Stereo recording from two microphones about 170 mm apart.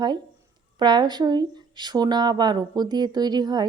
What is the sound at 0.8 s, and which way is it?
Speech, 25° right (ahead or behind).